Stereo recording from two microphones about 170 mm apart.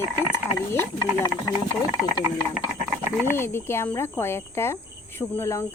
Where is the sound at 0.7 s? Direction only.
15° left (ahead or behind).